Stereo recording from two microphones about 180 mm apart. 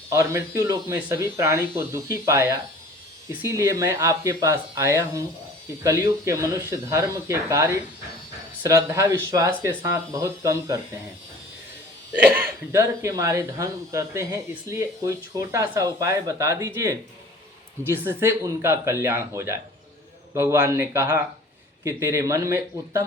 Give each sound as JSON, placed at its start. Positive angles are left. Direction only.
{"t": 0.1, "sound": "speech", "side_deg": -20}
{"t": 12.3, "sound": "speech", "side_deg": -15}
{"t": 18.1, "sound": "speech", "side_deg": -15}